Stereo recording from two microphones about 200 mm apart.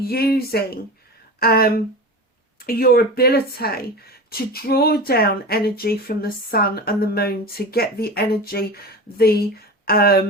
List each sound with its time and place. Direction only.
0.0 s speech: 50° left (ahead or behind)